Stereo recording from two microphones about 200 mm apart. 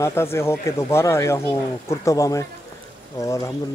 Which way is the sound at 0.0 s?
10° left (ahead or behind).